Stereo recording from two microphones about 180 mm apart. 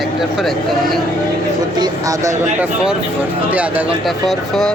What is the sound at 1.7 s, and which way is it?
Speech, 20° right (ahead or behind).